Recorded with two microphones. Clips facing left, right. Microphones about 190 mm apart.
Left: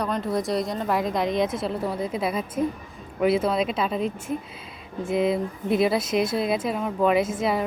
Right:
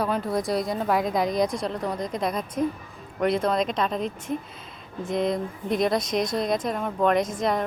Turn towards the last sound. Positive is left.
turn(degrees=5)  # may be behind; listen again after turning